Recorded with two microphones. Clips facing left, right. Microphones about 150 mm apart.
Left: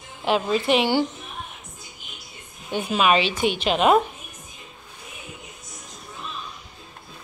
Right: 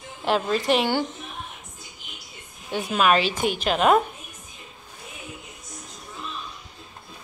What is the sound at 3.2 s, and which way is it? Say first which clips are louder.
Speech: left 1 dB; 40° right (ahead or behind).